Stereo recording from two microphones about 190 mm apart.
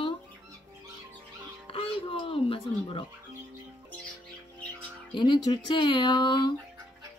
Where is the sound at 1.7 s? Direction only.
30° left (ahead or behind).